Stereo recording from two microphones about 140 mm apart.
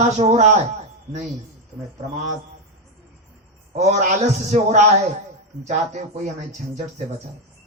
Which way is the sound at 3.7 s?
55° right (ahead or behind).